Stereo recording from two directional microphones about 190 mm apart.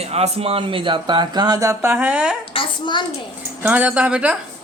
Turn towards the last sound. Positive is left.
turn(degrees=-5)  # may be behind; listen again after turning